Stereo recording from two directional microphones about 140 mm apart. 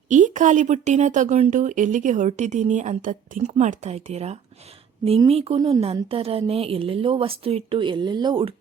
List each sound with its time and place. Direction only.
0.1 s a woman's voice: 65° right (ahead or behind); by 8.5 s 35° right (ahead or behind)